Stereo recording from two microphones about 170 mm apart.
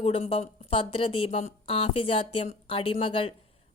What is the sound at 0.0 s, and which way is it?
Speech, 35° left (ahead or behind).